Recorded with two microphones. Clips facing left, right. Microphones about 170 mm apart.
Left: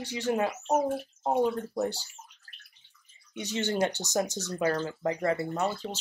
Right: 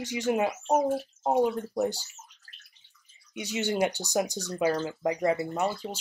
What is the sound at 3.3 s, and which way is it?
Speech, 10° right (ahead or behind).